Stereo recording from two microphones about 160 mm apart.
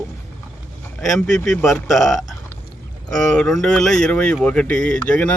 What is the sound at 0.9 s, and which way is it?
Speech, 5° left (ahead or behind).